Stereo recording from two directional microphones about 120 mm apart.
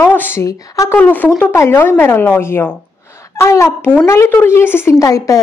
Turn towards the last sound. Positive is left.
turn(degrees=30)  # may be behind; listen again after turning